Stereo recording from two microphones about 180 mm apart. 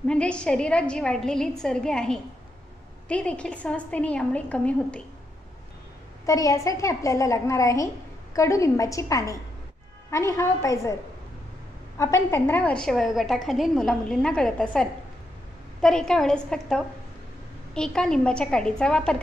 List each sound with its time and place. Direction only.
0.0 s a woman's voice: 5° left (ahead or behind)
6.2 s a woman's voice: 20° left (ahead or behind)
12.0 s a woman's voice: 15° left (ahead or behind)